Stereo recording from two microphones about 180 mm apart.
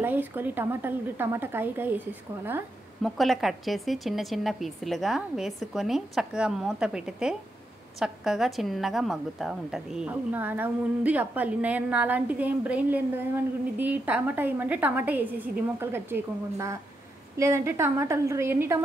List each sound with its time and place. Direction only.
0.0 s a woman's voice: 10° right (ahead or behind)
3.0 s a woman's voice: centre (ahead or behind)